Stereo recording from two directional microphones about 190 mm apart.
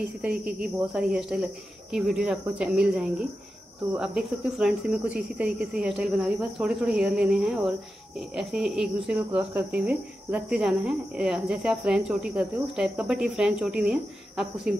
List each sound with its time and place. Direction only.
0.2 s speech: 5° right (ahead or behind)